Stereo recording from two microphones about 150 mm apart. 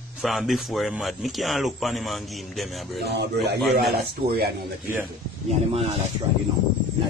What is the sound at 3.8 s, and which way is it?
Speech, 90° right.